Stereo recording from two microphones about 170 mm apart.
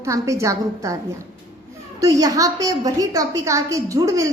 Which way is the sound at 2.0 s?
20° right (ahead or behind).